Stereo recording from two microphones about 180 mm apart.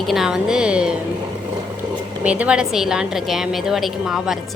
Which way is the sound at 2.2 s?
5° right (ahead or behind).